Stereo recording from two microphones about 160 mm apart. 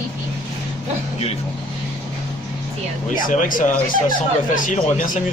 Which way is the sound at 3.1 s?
60° left (ahead or behind).